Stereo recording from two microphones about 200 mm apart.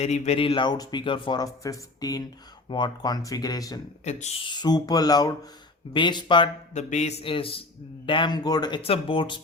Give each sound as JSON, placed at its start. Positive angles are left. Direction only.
{"t": 0.0, "sound": "speech", "side_deg": 30}
{"t": 4.0, "sound": "speech", "side_deg": 35}
{"t": 4.4, "sound": "speech", "side_deg": 20}
{"t": 6.7, "sound": "speech", "side_deg": 35}